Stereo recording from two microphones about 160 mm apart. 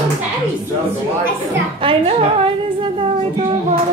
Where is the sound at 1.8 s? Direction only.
35° right (ahead or behind).